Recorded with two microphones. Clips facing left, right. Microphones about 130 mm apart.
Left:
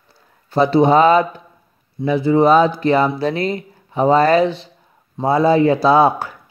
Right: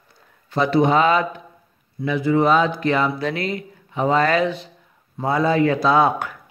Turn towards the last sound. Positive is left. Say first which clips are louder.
# left 4 dB
turn(degrees=30)  # may be behind; listen again after turning